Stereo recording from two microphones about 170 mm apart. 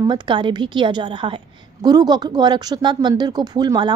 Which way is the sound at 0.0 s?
25° right (ahead or behind).